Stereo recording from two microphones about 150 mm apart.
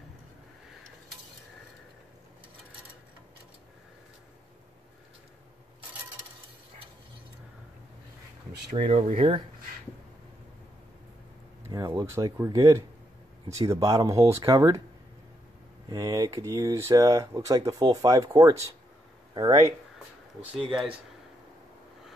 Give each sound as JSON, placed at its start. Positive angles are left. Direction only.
{"t": 8.7, "sound": "speech", "side_deg": -45}
{"t": 11.6, "sound": "speech", "side_deg": -20}
{"t": 15.9, "sound": "speech", "side_deg": -25}
{"t": 20.5, "sound": "speech", "side_deg": -5}